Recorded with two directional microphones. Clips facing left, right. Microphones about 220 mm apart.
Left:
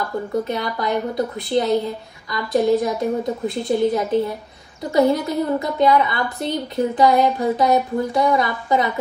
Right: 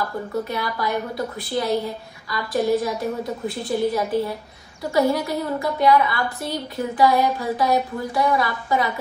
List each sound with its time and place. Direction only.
0.5 s a woman's voice: 20° left (ahead or behind)